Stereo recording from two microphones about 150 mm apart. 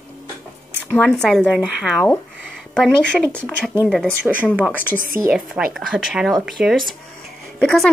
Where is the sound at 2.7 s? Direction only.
5° left (ahead or behind).